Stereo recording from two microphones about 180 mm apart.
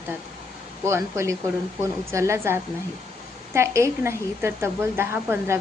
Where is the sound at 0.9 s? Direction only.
15° right (ahead or behind).